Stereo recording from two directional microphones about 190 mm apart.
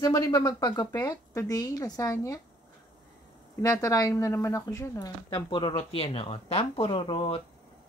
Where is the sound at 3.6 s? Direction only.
20° left (ahead or behind).